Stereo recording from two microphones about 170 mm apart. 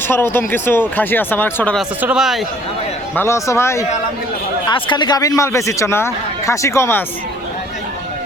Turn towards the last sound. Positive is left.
turn(degrees=15)  # may be behind; listen again after turning